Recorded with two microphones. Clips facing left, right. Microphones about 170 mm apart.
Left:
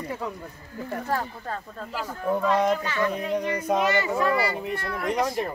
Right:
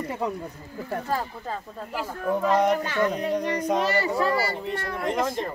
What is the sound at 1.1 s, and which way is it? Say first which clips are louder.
Speech: left 1 dB; 10° right (ahead or behind).